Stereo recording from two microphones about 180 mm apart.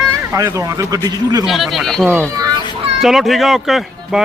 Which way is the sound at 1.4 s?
Centre (ahead or behind).